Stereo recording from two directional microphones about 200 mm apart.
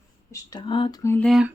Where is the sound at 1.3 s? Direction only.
5° right (ahead or behind).